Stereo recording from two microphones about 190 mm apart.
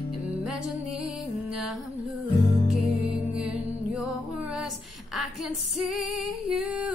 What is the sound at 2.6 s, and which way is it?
Music, centre (ahead or behind).